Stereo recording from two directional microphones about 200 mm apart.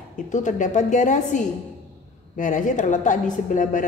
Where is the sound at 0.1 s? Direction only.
40° left (ahead or behind).